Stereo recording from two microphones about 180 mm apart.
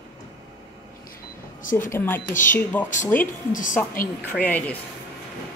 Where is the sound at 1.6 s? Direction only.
50° left (ahead or behind).